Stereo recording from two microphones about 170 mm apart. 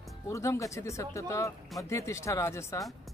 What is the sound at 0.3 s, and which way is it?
A man's voice, 15° left (ahead or behind).